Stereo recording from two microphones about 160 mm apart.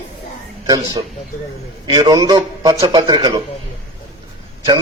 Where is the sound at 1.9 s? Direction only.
25° right (ahead or behind).